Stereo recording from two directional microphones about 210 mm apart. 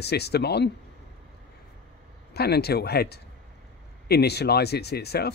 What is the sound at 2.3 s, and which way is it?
Speech, 50° left (ahead or behind).